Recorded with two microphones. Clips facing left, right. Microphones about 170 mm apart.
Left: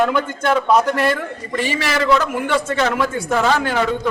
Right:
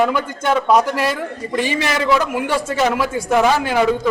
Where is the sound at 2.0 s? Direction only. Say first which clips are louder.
Left 1 dB; 5° right (ahead or behind).